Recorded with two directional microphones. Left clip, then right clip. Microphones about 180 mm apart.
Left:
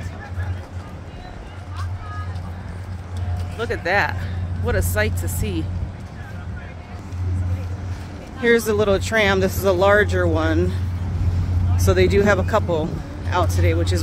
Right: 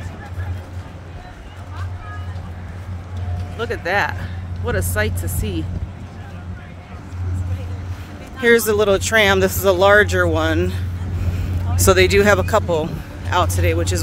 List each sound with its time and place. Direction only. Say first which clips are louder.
3.5 s speech: even; centre (ahead or behind)
8.4 s speech: right 3 dB; 20° right (ahead or behind)